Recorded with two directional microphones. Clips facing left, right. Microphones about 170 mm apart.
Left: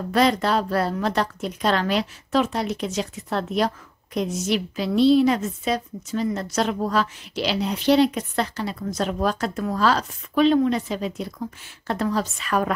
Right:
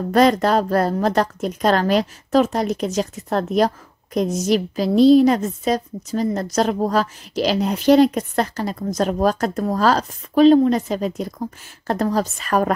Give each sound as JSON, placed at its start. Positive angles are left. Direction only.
{"t": 0.1, "sound": "a woman's voice", "side_deg": -45}